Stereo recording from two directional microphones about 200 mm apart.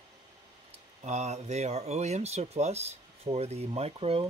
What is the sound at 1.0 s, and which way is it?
Speech, 35° right (ahead or behind).